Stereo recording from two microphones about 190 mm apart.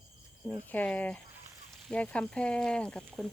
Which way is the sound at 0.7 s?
10° left (ahead or behind).